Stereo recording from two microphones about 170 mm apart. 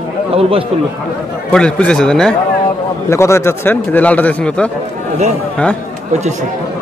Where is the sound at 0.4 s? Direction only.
35° right (ahead or behind).